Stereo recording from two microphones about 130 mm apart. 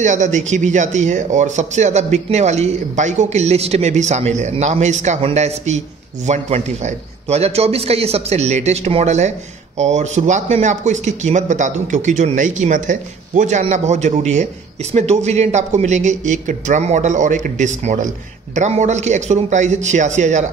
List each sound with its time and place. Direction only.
0.0 s speech: 70° right (ahead or behind)